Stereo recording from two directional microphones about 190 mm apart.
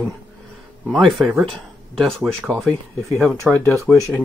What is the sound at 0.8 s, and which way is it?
Speech, centre (ahead or behind).